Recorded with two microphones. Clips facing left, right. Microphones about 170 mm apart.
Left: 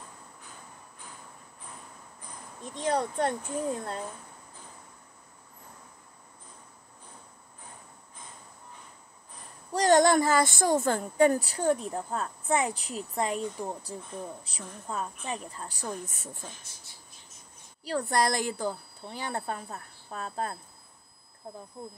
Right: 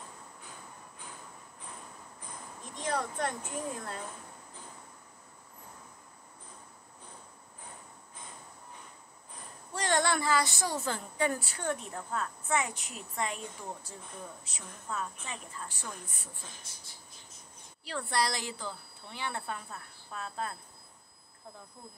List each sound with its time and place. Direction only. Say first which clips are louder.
2.8 s a woman's voice: left 6 dB; 30° left (ahead or behind)
9.8 s a woman's voice: left 9 dB; 40° left (ahead or behind)
17.8 s a woman's voice: left 5 dB; 40° left (ahead or behind)